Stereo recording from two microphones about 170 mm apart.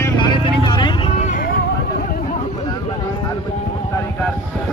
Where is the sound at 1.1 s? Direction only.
45° left (ahead or behind).